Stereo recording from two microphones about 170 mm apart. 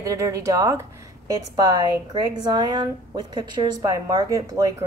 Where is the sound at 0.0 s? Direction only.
20° right (ahead or behind).